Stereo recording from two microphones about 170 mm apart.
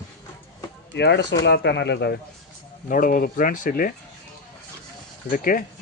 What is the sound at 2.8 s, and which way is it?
Speech, 55° left (ahead or behind).